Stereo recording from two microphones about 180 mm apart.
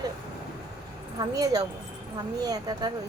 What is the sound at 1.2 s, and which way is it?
Speech, 20° right (ahead or behind).